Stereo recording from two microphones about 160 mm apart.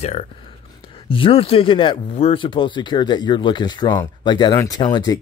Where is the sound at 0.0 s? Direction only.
40° left (ahead or behind).